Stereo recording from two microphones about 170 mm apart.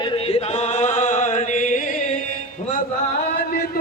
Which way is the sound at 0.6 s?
40° left (ahead or behind).